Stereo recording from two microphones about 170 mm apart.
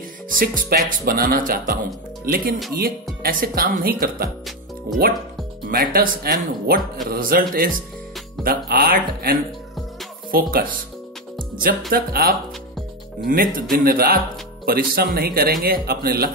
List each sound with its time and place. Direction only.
0.3 s speech: 55° right (ahead or behind)
5.7 s speech: 65° right (ahead or behind)
11.9 s speech: 60° right (ahead or behind)